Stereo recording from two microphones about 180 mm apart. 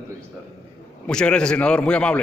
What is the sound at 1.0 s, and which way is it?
A man's voice, 5° left (ahead or behind).